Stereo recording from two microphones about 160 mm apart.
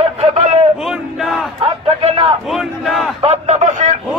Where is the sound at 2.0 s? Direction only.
35° right (ahead or behind).